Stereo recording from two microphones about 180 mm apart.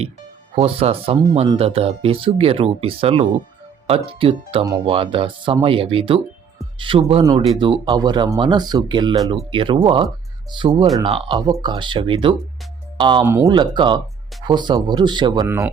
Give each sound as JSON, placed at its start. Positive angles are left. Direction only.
{"t": 0.5, "sound": "speech", "side_deg": -30}
{"t": 13.2, "sound": "speech", "side_deg": -10}
{"t": 13.5, "sound": "speech", "side_deg": -25}